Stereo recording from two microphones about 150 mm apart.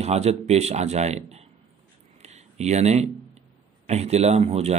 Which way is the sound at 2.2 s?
45° right (ahead or behind).